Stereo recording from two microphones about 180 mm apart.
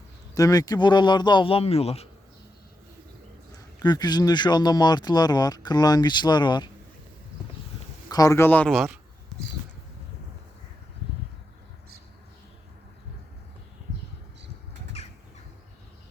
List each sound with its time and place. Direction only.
0.3 s speech: 20° left (ahead or behind); by 2.0 s 35° left (ahead or behind)
3.8 s speech: 25° left (ahead or behind)
8.1 s speech: 20° left (ahead or behind); by 9.0 s centre (ahead or behind)